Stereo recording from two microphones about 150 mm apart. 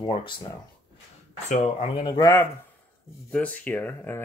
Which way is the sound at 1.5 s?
45° left (ahead or behind).